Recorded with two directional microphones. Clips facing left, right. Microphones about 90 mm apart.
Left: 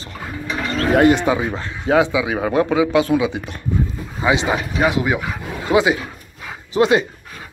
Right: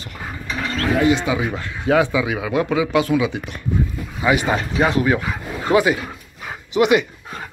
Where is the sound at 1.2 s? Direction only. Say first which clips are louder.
Left 3 dB; 30° left (ahead or behind).